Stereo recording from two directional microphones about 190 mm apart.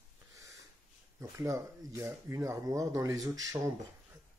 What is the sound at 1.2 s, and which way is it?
Speech, 15° right (ahead or behind).